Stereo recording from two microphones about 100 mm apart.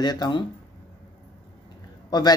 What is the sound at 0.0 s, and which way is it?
Speech, 45° left (ahead or behind).